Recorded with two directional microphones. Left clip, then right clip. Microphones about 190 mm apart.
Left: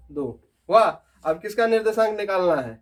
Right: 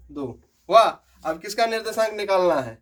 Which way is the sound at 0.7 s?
15° left (ahead or behind).